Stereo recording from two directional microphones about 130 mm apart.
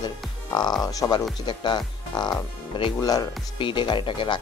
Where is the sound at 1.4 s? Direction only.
40° left (ahead or behind).